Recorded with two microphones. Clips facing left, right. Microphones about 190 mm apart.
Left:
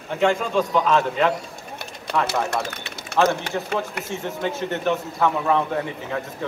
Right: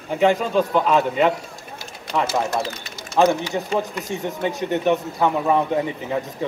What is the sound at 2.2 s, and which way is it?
Speech, 65° left (ahead or behind).